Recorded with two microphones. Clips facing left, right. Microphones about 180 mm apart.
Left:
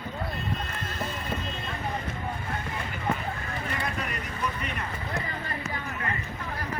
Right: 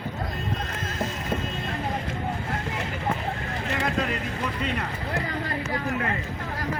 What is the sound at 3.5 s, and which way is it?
Vehicle, 90° right.